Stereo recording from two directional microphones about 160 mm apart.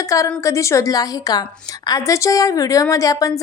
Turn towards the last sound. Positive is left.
turn(degrees=20)  # may be behind; listen again after turning